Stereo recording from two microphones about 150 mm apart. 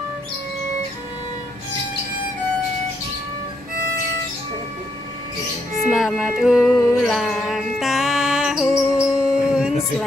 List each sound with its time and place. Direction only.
5.9 s music: centre (ahead or behind)